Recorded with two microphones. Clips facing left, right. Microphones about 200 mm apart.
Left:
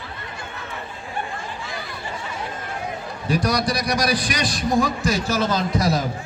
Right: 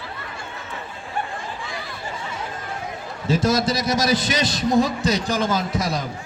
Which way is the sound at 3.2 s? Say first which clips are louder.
Right 2 dB; 25° right (ahead or behind).